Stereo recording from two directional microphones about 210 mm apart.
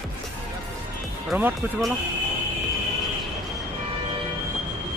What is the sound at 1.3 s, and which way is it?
Speech, 5° right (ahead or behind).